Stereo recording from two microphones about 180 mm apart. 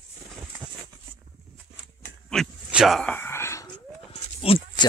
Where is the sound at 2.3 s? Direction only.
Centre (ahead or behind); by 3.8 s 15° left (ahead or behind).